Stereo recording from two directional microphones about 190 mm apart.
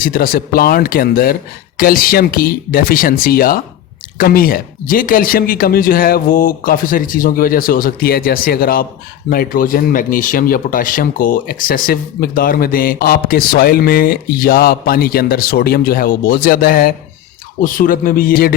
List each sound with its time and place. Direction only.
0.0 s speech: 50° left (ahead or behind)